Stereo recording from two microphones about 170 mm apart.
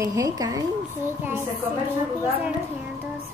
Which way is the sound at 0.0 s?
20° right (ahead or behind).